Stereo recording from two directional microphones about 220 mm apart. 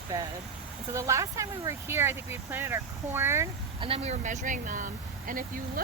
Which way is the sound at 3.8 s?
25° right (ahead or behind).